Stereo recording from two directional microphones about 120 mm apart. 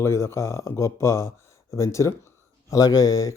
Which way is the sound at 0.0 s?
20° left (ahead or behind).